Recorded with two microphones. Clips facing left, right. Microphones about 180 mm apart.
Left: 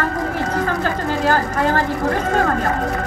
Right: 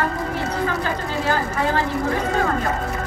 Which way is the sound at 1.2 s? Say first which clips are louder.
Left 4 dB; 45° left (ahead or behind).